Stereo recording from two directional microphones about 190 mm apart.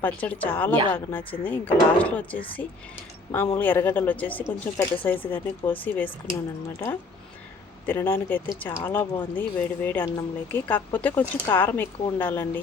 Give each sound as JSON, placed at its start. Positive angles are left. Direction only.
{"t": 0.0, "sound": "speech", "side_deg": 10}
{"t": 7.9, "sound": "speech", "side_deg": 10}